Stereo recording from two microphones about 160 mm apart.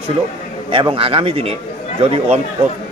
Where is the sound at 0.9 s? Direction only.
35° right (ahead or behind).